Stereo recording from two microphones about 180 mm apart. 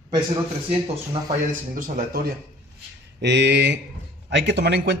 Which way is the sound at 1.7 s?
50° right (ahead or behind).